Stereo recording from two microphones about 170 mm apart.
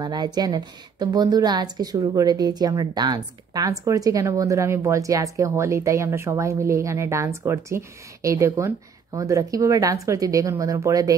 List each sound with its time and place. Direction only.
0.0 s a woman's voice: 25° right (ahead or behind)